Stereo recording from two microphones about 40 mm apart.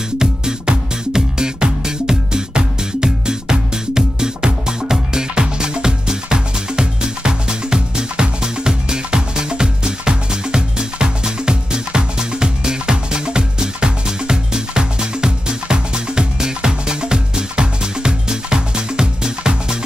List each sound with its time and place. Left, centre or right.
0.2 s music: centre